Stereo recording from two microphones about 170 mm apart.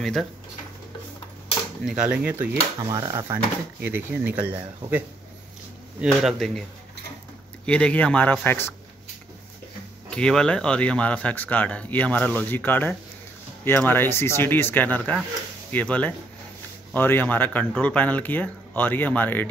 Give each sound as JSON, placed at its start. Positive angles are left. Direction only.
{"t": 0.0, "sound": "speech", "side_deg": 0}
{"t": 1.9, "sound": "speech", "side_deg": -5}
{"t": 2.9, "sound": "speech", "side_deg": -20}
{"t": 6.0, "sound": "speech", "side_deg": 0}
{"t": 7.6, "sound": "speech", "side_deg": 5}
{"t": 10.0, "sound": "speech", "side_deg": 5}